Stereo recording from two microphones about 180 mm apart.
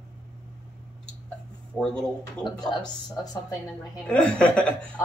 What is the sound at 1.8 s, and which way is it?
Speech, centre (ahead or behind).